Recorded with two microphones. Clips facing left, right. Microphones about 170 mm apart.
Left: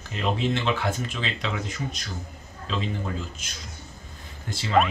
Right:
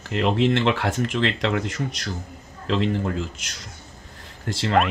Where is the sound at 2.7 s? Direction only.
75° right (ahead or behind).